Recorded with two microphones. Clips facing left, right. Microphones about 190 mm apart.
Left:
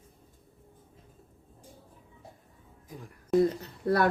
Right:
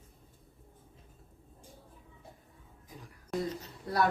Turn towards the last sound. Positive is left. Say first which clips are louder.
# left 5 dB
turn(degrees=60)  # may be behind; listen again after turning